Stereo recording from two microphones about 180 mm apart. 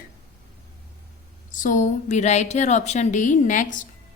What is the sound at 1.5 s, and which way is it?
A woman's voice, 45° left (ahead or behind).